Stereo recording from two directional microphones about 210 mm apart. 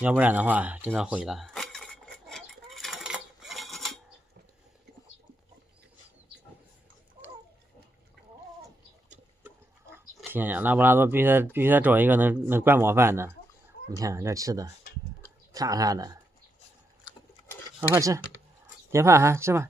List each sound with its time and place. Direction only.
0.0 s a sound: 10° right (ahead or behind)
10.3 s speech: 10° right (ahead or behind)
17.7 s speech: 10° right (ahead or behind)